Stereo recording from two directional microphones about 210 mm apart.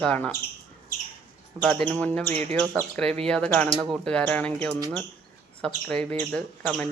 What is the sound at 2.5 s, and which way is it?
Speech, 5° left (ahead or behind).